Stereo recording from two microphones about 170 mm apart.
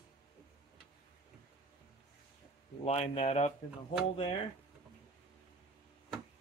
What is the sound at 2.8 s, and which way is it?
Speech, 40° left (ahead or behind).